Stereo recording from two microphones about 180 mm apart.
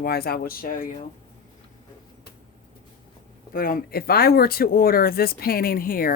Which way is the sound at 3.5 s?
55° left (ahead or behind).